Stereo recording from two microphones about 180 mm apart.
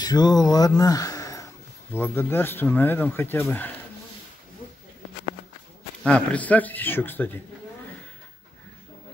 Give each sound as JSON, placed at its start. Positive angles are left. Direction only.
{"t": 0.0, "sound": "speech", "side_deg": 20}
{"t": 6.0, "sound": "speech", "side_deg": 5}